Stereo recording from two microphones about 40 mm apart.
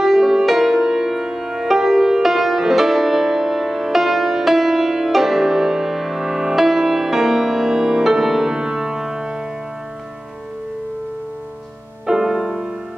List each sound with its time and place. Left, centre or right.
0.0 s music: centre
12.1 s music: centre